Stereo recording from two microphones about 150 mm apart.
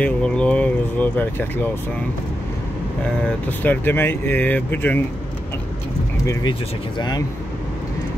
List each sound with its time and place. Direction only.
0.0 s speech: 5° left (ahead or behind)
3.4 s speech: 10° left (ahead or behind)
7.0 s speech: 30° left (ahead or behind)